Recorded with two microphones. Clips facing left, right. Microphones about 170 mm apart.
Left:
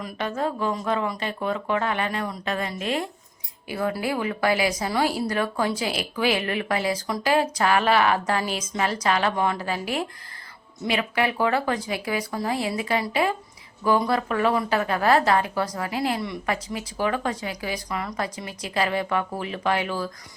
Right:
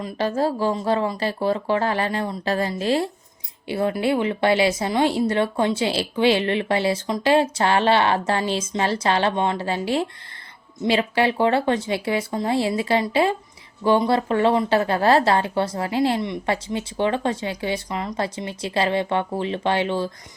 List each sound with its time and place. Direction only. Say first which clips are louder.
0.0 s speech: right 5 dB; 30° right (ahead or behind)